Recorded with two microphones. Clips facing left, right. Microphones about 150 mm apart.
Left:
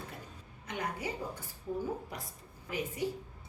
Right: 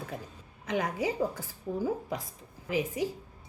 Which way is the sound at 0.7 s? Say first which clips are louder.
Right 7 dB; 90° right.